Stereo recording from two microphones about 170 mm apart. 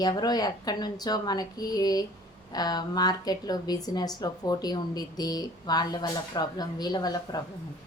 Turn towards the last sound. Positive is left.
turn(degrees=20)  # may be behind; listen again after turning